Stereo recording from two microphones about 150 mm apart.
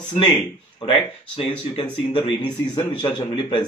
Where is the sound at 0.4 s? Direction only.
45° left (ahead or behind).